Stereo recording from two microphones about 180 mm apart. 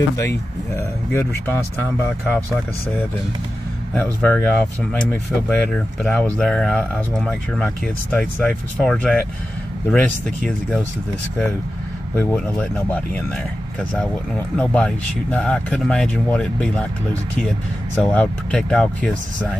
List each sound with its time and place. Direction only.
0.2 s speech: 15° left (ahead or behind)
3.9 s speech: 10° left (ahead or behind)
12.2 s speech: 10° left (ahead or behind)
14.6 s speech: 5° left (ahead or behind)
17.9 s speech: 10° left (ahead or behind)